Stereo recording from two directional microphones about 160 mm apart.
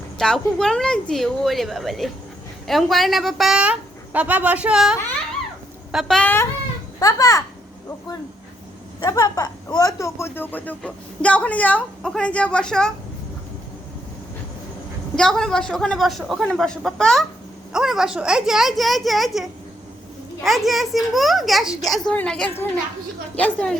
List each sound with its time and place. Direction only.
0.2 s a woman's voice: 5° left (ahead or behind); by 7.4 s 20° left (ahead or behind)
9.0 s speech: 25° left (ahead or behind); by 12.9 s 5° left (ahead or behind)
15.1 s a woman's voice: 5° left (ahead or behind)